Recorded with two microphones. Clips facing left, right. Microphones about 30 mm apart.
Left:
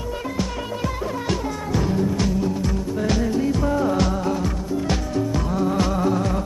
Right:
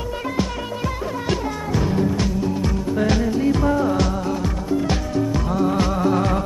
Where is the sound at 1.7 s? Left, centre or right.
Centre.